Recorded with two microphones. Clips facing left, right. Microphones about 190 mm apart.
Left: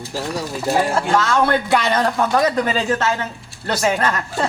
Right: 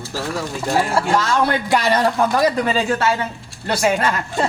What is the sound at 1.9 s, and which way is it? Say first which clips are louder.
Speech: right 1 dB; 10° right (ahead or behind).